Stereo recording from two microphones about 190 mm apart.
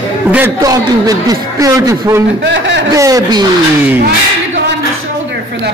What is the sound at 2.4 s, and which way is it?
Speech, 70° right (ahead or behind).